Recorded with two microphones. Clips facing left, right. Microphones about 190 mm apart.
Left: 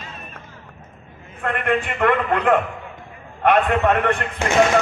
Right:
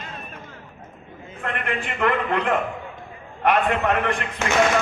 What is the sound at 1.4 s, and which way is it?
A man's voice, 55° left (ahead or behind).